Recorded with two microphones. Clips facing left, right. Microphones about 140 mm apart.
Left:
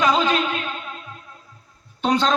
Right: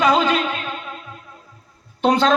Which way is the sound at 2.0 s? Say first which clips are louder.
Right 3 dB; 60° right (ahead or behind).